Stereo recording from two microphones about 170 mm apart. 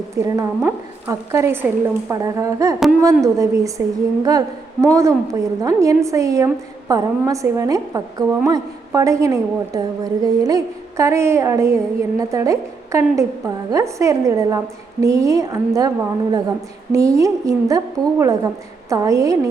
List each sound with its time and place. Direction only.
0.2 s a woman's voice: 15° right (ahead or behind)